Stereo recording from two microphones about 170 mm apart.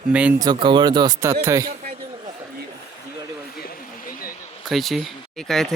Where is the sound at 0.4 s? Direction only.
30° right (ahead or behind).